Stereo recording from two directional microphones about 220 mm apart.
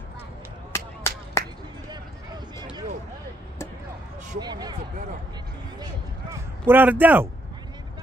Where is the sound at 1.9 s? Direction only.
20° right (ahead or behind).